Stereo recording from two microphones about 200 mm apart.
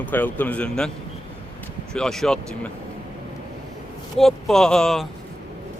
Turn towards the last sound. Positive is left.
turn(degrees=0)  # may be behind; listen again after turning